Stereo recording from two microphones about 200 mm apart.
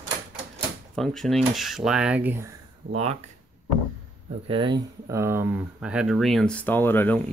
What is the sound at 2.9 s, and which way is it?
Speech, 30° right (ahead or behind).